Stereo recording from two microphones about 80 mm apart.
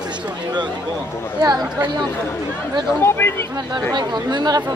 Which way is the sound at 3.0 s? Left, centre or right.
Left.